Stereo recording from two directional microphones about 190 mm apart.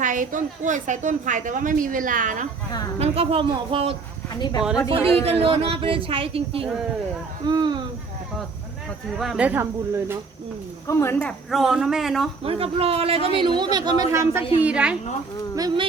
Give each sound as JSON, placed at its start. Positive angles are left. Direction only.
{"t": 0.0, "sound": "a woman's voice", "side_deg": -45}
{"t": 3.0, "sound": "speech", "side_deg": -30}
{"t": 4.4, "sound": "speech", "side_deg": 20}
{"t": 5.2, "sound": "speech", "side_deg": -30}
{"t": 9.1, "sound": "speech", "side_deg": 0}
{"t": 10.8, "sound": "speech", "side_deg": 10}
{"t": 12.4, "sound": "speech", "side_deg": -30}
{"t": 15.5, "sound": "speech", "side_deg": -25}